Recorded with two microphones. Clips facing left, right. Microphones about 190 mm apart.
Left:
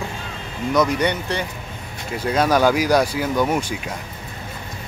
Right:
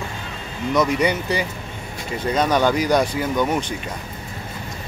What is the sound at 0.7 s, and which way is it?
Speech, centre (ahead or behind).